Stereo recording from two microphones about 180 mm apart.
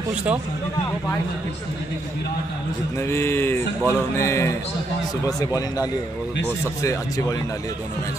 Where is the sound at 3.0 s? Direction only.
15° left (ahead or behind).